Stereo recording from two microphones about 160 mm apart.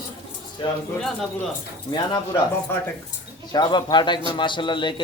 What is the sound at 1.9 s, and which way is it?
Speech, 25° left (ahead or behind).